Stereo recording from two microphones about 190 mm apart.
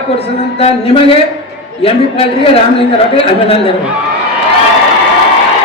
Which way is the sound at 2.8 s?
30° left (ahead or behind).